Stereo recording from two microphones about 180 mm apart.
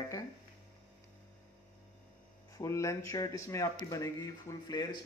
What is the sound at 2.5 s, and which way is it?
Speech, 20° left (ahead or behind).